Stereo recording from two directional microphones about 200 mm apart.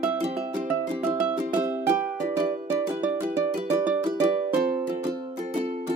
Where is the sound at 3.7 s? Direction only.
10° right (ahead or behind).